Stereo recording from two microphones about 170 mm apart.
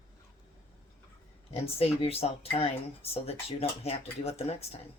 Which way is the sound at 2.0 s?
35° left (ahead or behind).